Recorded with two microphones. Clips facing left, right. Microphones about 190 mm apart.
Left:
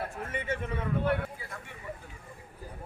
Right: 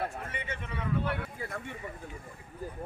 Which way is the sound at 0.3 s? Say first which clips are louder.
Left 6 dB; 50° left (ahead or behind).